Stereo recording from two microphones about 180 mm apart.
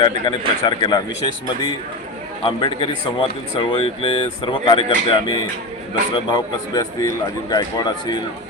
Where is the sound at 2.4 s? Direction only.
25° left (ahead or behind).